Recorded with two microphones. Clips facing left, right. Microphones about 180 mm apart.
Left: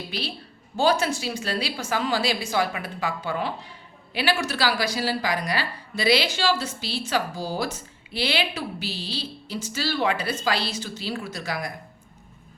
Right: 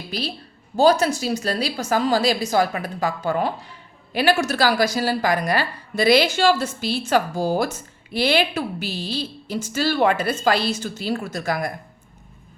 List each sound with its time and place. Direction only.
0.1 s a woman's voice: 40° right (ahead or behind)